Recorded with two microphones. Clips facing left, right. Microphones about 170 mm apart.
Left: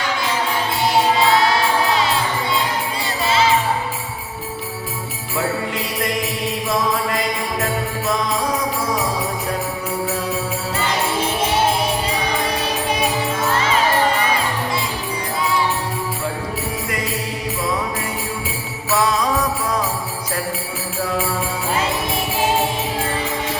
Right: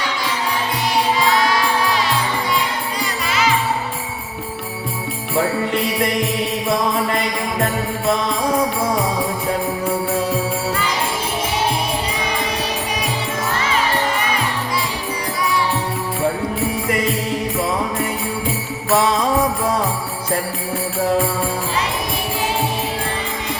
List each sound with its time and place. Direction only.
3.2 s music: 30° left (ahead or behind)
19.0 s jingle bell: 25° right (ahead or behind)